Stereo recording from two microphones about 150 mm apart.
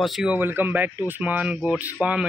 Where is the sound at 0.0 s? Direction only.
5° right (ahead or behind).